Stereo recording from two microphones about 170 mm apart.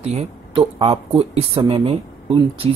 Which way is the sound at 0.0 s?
40° right (ahead or behind).